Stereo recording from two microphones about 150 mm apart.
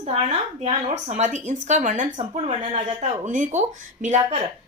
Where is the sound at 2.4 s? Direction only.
45° right (ahead or behind).